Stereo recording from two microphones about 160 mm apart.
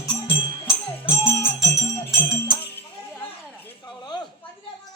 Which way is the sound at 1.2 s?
15° left (ahead or behind).